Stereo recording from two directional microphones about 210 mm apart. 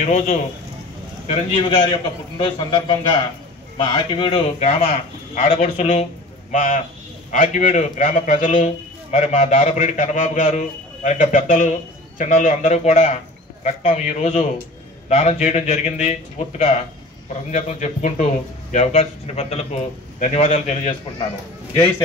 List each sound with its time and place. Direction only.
0.0 s a man's voice: 35° left (ahead or behind)